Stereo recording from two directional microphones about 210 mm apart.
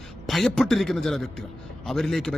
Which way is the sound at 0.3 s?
Centre (ahead or behind).